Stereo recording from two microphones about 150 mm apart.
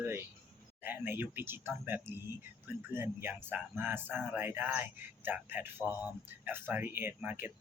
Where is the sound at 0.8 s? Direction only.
15° right (ahead or behind).